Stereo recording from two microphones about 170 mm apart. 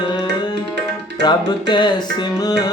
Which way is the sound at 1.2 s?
25° left (ahead or behind).